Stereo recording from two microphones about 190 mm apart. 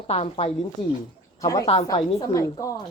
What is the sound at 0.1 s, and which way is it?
Speech, 35° left (ahead or behind).